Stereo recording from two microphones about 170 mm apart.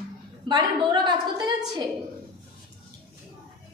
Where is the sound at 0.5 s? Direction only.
25° right (ahead or behind).